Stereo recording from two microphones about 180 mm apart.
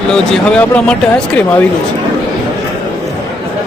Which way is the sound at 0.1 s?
5° left (ahead or behind).